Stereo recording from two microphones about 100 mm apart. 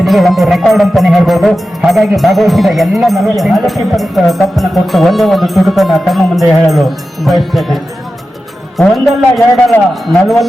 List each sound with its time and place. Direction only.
0.0 s music: centre (ahead or behind)
8.8 s music: centre (ahead or behind)